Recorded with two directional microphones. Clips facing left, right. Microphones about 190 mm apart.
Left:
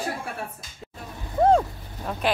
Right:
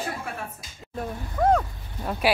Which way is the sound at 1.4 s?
25° left (ahead or behind).